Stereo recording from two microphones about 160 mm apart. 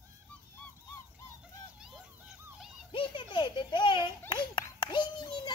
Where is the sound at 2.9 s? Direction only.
30° left (ahead or behind).